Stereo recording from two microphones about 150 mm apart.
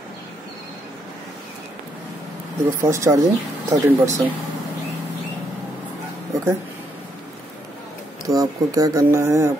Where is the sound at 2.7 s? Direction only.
20° right (ahead or behind).